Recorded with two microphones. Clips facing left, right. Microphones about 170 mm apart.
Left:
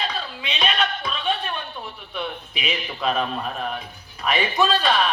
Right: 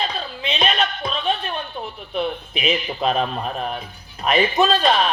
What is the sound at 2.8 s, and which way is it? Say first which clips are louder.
A man's voice: right 3 dB; 45° right (ahead or behind).